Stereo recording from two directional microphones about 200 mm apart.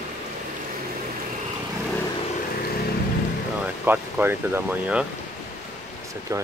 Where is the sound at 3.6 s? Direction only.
10° right (ahead or behind).